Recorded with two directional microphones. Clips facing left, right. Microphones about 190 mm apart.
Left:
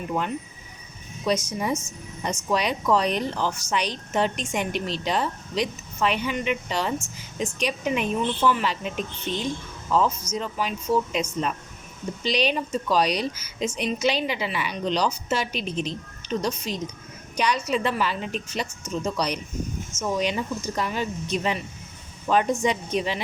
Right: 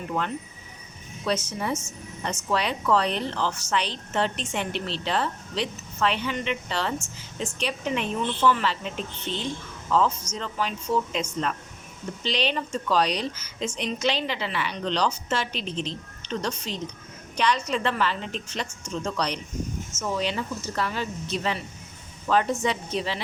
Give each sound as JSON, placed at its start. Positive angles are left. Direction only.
{"t": 1.2, "sound": "speech", "side_deg": 10}